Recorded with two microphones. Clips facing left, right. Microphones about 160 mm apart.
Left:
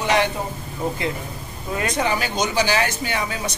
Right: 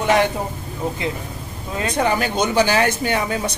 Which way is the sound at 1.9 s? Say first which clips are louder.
Right 5 dB; 50° right (ahead or behind).